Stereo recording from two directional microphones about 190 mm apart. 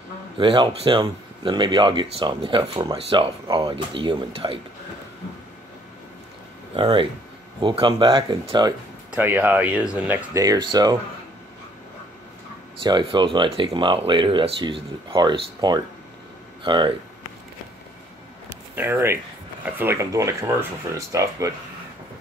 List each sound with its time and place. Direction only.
0.4 s speech: 25° right (ahead or behind)
6.7 s speech: 30° right (ahead or behind)
9.1 s speech: 10° right (ahead or behind)
12.8 s speech: 25° right (ahead or behind)
18.5 s a sound: 10° right (ahead or behind)
19.6 s speech: 10° right (ahead or behind)